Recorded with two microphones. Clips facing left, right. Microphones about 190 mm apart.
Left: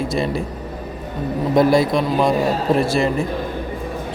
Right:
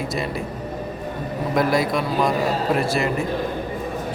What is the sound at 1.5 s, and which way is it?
Speech, 25° left (ahead or behind).